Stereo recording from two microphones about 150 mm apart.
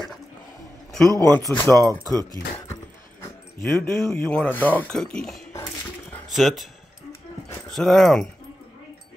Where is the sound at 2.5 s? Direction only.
15° left (ahead or behind).